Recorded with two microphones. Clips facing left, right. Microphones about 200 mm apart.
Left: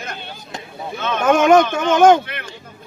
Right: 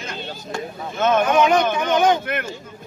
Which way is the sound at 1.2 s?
50° left (ahead or behind).